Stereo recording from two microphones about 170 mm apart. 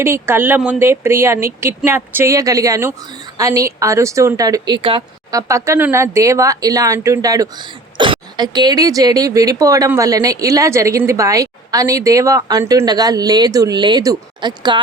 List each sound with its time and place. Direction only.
0.0 s speech: 15° right (ahead or behind); by 5.0 s 30° right (ahead or behind)
5.3 s speech: 20° right (ahead or behind)